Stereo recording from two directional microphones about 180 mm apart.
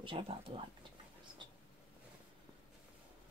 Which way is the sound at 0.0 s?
30° right (ahead or behind).